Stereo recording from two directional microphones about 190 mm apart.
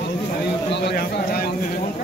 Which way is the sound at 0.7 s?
60° left (ahead or behind).